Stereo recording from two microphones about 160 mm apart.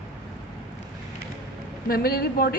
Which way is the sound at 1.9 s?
70° left (ahead or behind).